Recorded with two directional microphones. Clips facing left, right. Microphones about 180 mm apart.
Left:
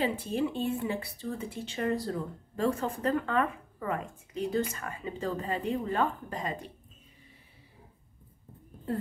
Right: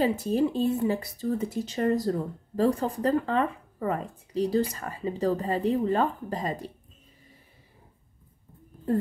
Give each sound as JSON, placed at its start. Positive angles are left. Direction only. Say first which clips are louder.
{"t": 0.0, "sound": "speech", "louder": "right 5 dB", "side_deg": -45}